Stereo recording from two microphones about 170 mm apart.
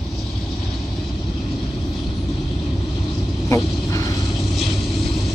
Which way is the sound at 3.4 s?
20° left (ahead or behind).